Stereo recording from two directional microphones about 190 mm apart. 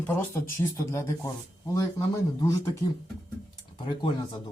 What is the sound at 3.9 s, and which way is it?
Speech, 25° left (ahead or behind).